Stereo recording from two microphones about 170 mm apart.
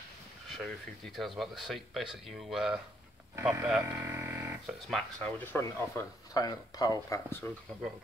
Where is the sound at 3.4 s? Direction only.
15° right (ahead or behind).